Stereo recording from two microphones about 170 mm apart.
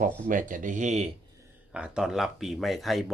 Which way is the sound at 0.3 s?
50° right (ahead or behind).